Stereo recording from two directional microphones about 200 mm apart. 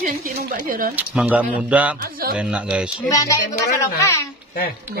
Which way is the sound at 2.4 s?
5° right (ahead or behind).